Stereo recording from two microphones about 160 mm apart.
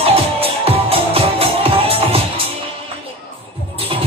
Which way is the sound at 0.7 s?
35° right (ahead or behind).